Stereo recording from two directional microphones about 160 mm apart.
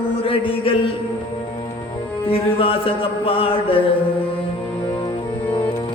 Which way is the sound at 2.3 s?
35° left (ahead or behind).